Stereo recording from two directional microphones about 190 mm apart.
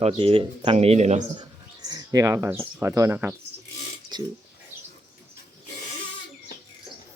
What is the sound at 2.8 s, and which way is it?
Speech, 15° right (ahead or behind).